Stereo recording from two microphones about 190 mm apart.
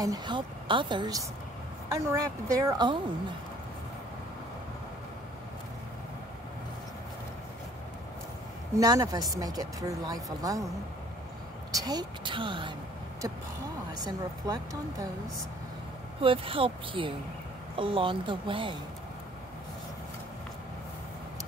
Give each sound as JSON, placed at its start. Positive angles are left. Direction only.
{"t": 0.0, "sound": "a woman's voice", "side_deg": -20}
{"t": 8.7, "sound": "speech", "side_deg": -20}
{"t": 11.7, "sound": "speech", "side_deg": -20}
{"t": 13.9, "sound": "speech", "side_deg": -20}
{"t": 16.2, "sound": "speech", "side_deg": -30}